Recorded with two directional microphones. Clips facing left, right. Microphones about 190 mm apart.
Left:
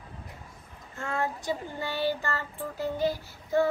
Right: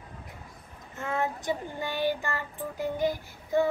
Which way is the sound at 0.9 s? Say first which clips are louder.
Right 1 dB; 20° right (ahead or behind).